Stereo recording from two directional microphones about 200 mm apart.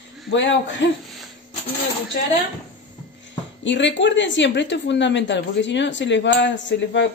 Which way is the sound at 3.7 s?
65° left (ahead or behind).